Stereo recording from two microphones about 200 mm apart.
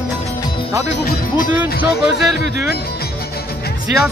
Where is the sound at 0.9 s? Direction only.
45° left (ahead or behind).